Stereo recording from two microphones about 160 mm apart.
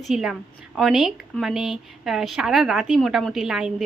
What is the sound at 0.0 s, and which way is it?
Speech, centre (ahead or behind).